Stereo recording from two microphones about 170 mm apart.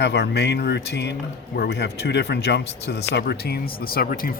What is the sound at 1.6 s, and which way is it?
Speech, 75° left (ahead or behind).